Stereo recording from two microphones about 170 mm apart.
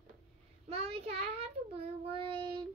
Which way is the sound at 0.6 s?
35° right (ahead or behind).